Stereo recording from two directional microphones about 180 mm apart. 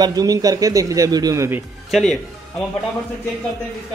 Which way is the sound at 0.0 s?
20° right (ahead or behind).